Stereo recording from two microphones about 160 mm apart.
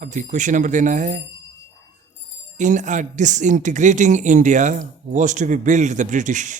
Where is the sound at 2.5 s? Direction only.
50° right (ahead or behind).